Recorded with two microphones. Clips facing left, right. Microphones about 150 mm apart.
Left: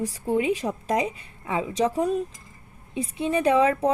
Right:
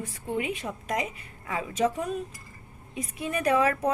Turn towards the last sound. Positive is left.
turn(degrees=25)  # may be behind; listen again after turning